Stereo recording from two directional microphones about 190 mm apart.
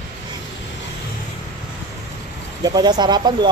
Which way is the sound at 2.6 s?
20° right (ahead or behind).